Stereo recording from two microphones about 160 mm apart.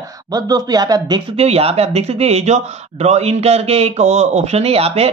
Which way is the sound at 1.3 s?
40° right (ahead or behind).